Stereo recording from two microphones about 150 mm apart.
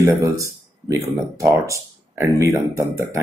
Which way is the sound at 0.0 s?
20° right (ahead or behind).